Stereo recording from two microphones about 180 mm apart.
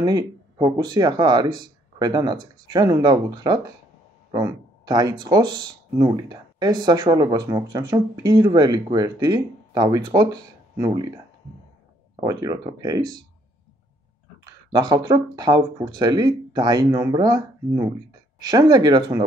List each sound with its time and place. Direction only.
0.0 s speech: 20° right (ahead or behind)
12.2 s speech: 20° right (ahead or behind)
14.7 s speech: 25° right (ahead or behind)